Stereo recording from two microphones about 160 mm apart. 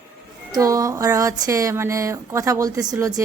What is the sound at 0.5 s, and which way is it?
Speech, 20° right (ahead or behind).